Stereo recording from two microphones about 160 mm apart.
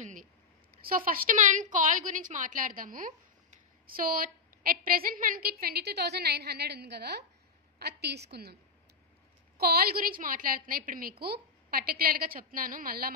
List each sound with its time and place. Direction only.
0.0 s a sound: 50° right (ahead or behind)
0.8 s a woman's voice: 65° right (ahead or behind); by 8.5 s 90° right
9.6 s a woman's voice: 75° right (ahead or behind)